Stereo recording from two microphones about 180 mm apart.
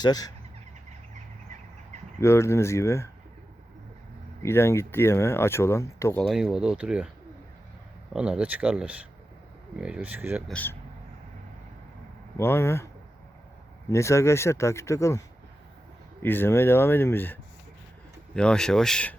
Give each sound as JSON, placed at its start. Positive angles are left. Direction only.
{"t": 0.0, "sound": "speech", "side_deg": 20}
{"t": 2.2, "sound": "speech", "side_deg": 15}
{"t": 4.4, "sound": "speech", "side_deg": 15}
{"t": 6.2, "sound": "speech", "side_deg": 0}
{"t": 8.1, "sound": "speech", "side_deg": -5}
{"t": 10.5, "sound": "speech", "side_deg": 10}
{"t": 12.4, "sound": "speech", "side_deg": 15}
{"t": 13.9, "sound": "speech", "side_deg": 15}
{"t": 16.2, "sound": "speech", "side_deg": 10}